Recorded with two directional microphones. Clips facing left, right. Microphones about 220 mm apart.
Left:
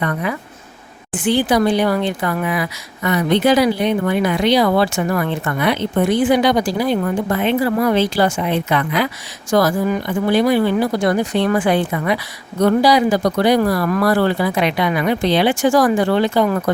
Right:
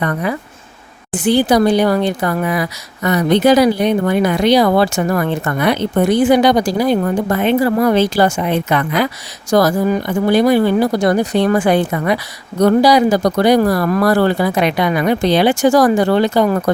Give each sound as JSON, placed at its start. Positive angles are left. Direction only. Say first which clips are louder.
{"t": 0.0, "sound": "speech", "louder": "right 3 dB", "side_deg": -40}